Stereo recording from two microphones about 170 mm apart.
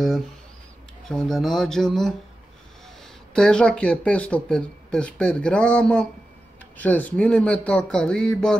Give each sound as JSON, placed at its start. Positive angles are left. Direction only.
{"t": 1.0, "sound": "speech", "side_deg": 0}
{"t": 3.3, "sound": "speech", "side_deg": 5}